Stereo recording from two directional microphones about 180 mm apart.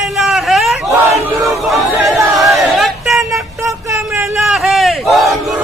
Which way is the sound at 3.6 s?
15° right (ahead or behind).